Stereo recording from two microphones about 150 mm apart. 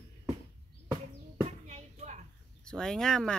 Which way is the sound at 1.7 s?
50° right (ahead or behind).